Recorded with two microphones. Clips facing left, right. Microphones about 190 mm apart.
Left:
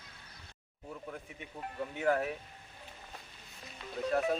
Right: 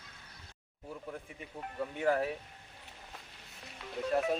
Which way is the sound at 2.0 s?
30° right (ahead or behind).